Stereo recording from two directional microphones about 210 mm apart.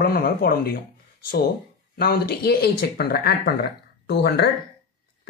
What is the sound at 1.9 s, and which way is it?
Speech, 50° left (ahead or behind).